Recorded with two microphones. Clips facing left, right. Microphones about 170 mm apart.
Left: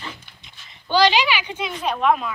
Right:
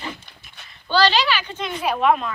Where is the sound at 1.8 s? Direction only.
5° right (ahead or behind).